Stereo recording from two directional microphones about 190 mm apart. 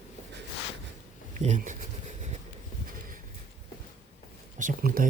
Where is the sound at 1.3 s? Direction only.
40° right (ahead or behind).